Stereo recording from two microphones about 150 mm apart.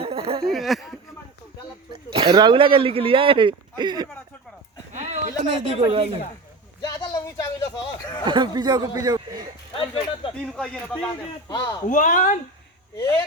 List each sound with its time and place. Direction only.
0.0 s a sound: 40° right (ahead or behind)
0.5 s a sound: centre (ahead or behind)
1.9 s speech: 30° right (ahead or behind)
4.9 s a sound: 50° right (ahead or behind)
5.5 s speech: 35° right (ahead or behind)
6.8 s speech: 25° left (ahead or behind)
8.2 s speech: 30° right (ahead or behind)
9.7 s speech: 35° left (ahead or behind)
10.4 s speech: 5° left (ahead or behind)
11.4 s speech: 25° left (ahead or behind)
11.9 s speech: 55° left (ahead or behind)